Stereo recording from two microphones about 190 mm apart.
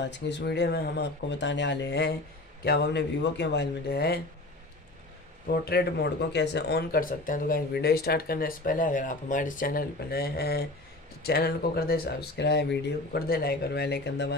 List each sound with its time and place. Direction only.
0.0 s speech: 65° left (ahead or behind)
5.5 s speech: 55° left (ahead or behind)